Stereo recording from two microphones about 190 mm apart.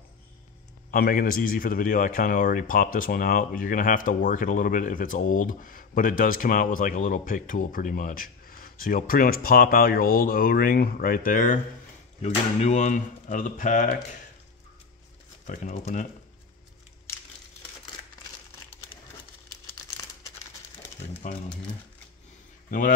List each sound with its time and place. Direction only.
0.9 s a man's voice: 50° left (ahead or behind)
15.4 s speech: 40° left (ahead or behind)
20.2 s crumpling: 10° left (ahead or behind)
22.7 s speech: 45° left (ahead or behind)